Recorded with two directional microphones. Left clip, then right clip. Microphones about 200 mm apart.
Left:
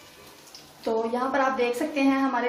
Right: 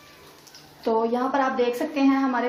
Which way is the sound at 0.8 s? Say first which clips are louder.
Right 3 dB; 35° right (ahead or behind).